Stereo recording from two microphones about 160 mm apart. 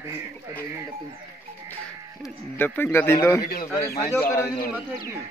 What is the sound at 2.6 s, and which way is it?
Speech, 15° left (ahead or behind).